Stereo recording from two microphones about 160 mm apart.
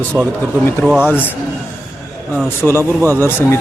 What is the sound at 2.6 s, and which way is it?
Speech, centre (ahead or behind).